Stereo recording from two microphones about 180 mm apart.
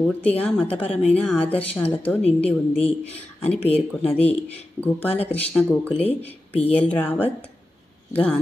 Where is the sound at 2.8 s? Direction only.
35° left (ahead or behind).